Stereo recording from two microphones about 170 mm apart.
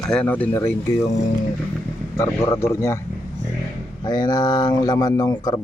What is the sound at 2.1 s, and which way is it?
Speech, 15° left (ahead or behind).